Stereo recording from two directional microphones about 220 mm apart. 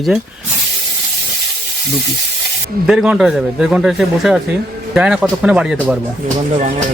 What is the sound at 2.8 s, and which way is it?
A man's voice, 5° right (ahead or behind).